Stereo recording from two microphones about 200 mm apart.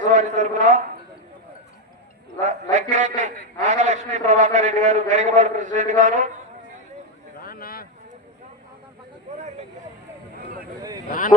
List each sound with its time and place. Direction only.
0.0 s a man's voice: 40° right (ahead or behind)
2.4 s a man's voice: 35° right (ahead or behind)
7.3 s a sound: 50° left (ahead or behind)
11.1 s speech: 45° left (ahead or behind)